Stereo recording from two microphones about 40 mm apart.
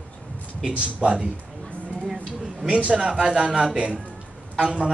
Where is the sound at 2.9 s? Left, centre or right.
Centre.